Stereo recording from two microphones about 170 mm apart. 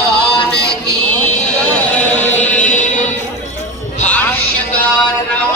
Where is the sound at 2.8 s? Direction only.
45° left (ahead or behind).